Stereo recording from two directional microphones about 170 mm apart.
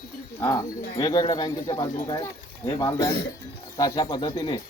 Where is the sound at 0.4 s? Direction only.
20° left (ahead or behind).